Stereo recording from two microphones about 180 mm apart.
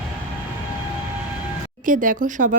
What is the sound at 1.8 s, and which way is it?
Speech, 50° right (ahead or behind).